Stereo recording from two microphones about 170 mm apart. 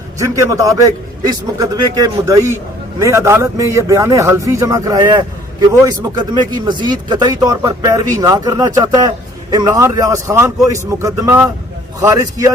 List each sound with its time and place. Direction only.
0.2 s speech: 20° right (ahead or behind)